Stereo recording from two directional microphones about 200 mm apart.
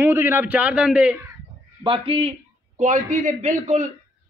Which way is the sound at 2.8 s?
40° right (ahead or behind).